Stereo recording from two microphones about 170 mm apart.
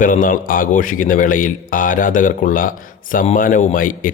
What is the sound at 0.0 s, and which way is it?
A man's voice, 50° left (ahead or behind).